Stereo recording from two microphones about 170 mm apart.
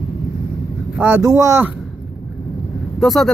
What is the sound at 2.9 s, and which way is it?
Speech, centre (ahead or behind).